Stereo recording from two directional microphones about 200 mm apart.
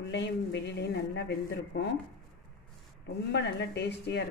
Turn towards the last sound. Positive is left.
turn(degrees=55)  # may be behind; listen again after turning